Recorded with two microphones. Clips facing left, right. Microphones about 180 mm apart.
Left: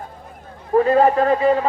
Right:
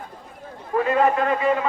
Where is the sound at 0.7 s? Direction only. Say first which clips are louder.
Left 5 dB; 35° left (ahead or behind).